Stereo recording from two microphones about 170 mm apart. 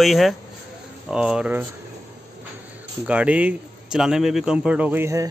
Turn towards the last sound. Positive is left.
turn(degrees=-15)  # may be behind; listen again after turning